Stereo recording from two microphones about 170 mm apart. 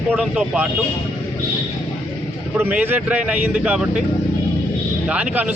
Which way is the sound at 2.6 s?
10° right (ahead or behind).